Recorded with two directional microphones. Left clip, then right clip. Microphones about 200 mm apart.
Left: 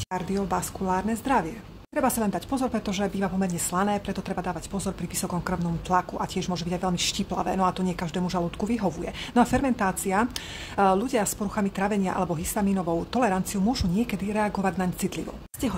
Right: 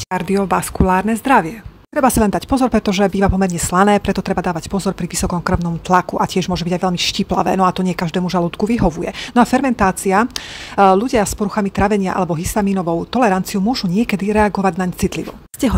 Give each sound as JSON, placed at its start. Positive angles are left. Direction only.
{"t": 0.1, "sound": "speech", "side_deg": -30}